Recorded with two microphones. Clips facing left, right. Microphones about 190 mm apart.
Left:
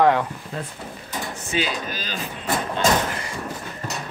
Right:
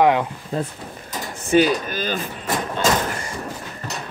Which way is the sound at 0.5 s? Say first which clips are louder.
Right 8 dB; 35° right (ahead or behind).